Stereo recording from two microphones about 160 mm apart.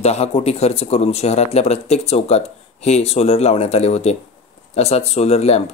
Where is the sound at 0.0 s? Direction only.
40° left (ahead or behind).